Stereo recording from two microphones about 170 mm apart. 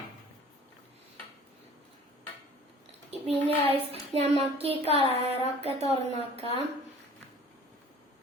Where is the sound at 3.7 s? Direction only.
35° right (ahead or behind).